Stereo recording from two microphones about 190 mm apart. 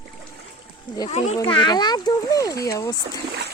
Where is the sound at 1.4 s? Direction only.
20° left (ahead or behind).